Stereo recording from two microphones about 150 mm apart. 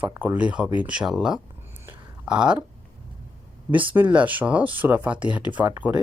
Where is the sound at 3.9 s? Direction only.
10° right (ahead or behind).